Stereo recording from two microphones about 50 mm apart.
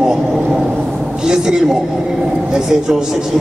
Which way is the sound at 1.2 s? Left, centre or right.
Centre.